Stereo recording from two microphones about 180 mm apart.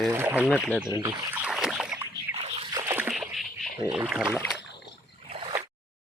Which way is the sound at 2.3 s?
35° right (ahead or behind).